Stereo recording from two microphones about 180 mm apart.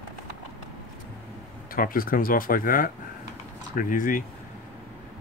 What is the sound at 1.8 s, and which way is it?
Speech, 50° left (ahead or behind).